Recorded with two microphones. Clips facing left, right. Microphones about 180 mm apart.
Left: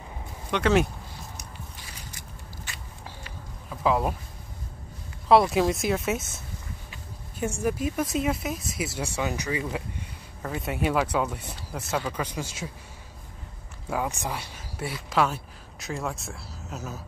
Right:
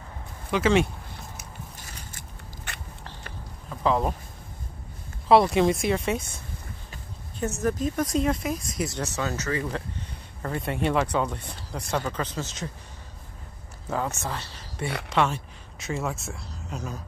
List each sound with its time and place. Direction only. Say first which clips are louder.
0.5 s speech: right 1 dB; centre (ahead or behind)
1.8 s scissors: right 1 dB; 55° right (ahead or behind)
3.8 s speech: even; 5° left (ahead or behind)
5.3 s speech: right 1 dB; centre (ahead or behind)
7.3 s speech: right 1 dB; 10° left (ahead or behind)
13.8 s speech: even; 10° left (ahead or behind)